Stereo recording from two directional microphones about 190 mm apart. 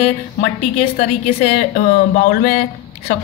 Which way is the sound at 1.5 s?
45° left (ahead or behind).